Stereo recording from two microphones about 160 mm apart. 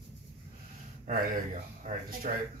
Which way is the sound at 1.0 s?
55° right (ahead or behind).